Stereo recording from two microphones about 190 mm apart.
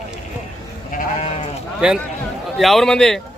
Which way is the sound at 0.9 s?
35° left (ahead or behind).